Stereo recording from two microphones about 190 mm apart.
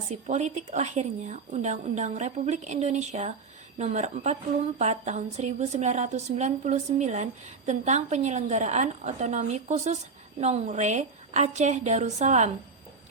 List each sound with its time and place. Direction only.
0.1 s a woman's voice: 35° right (ahead or behind)